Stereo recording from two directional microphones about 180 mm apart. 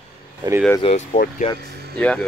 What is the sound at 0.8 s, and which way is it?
Speech, 45° left (ahead or behind).